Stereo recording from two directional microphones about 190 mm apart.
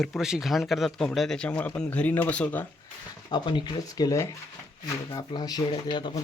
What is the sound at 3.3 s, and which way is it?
Speech, 25° left (ahead or behind).